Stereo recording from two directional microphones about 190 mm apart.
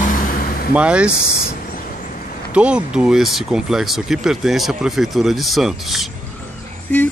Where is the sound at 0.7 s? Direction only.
5° right (ahead or behind).